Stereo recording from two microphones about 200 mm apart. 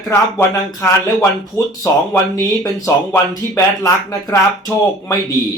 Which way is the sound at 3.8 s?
15° left (ahead or behind).